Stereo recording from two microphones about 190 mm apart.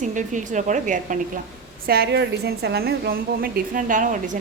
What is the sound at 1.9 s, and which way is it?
A woman's voice, 55° right (ahead or behind).